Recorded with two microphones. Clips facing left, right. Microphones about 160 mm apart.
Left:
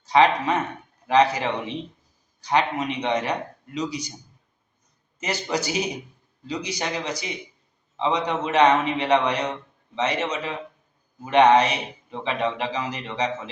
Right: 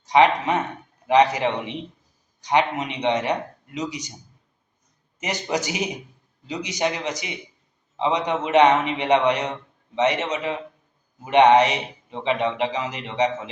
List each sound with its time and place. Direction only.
0.0 s a man's voice: 15° right (ahead or behind)
5.2 s a man's voice: 15° right (ahead or behind)